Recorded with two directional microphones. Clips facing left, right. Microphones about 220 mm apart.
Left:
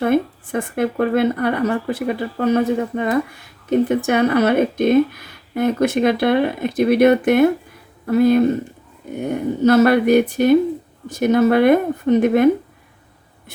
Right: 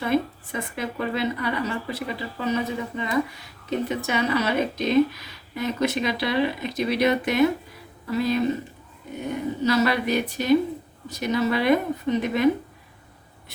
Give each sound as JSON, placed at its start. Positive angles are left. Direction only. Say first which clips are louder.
{"t": 0.0, "sound": "speech", "louder": "left 6 dB", "side_deg": 55}